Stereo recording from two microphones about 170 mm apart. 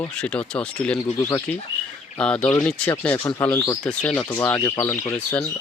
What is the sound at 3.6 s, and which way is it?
Speech, 20° left (ahead or behind).